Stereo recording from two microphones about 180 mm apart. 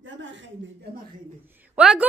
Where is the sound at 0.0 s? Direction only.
90° right.